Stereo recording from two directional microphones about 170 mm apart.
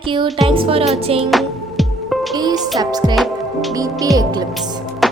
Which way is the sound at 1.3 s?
Centre (ahead or behind).